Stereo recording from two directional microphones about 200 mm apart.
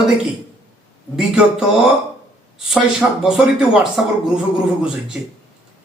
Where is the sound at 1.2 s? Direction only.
Centre (ahead or behind).